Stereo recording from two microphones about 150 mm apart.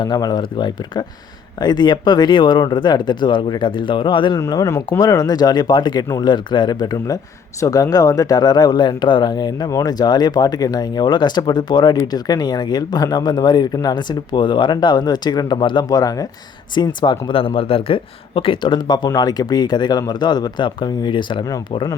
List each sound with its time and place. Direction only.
0.0 s speech: 25° left (ahead or behind)